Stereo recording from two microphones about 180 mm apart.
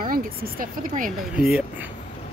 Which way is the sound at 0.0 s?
50° right (ahead or behind).